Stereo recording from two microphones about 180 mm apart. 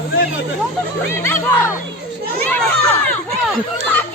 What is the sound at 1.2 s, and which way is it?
A child's voice, 15° left (ahead or behind).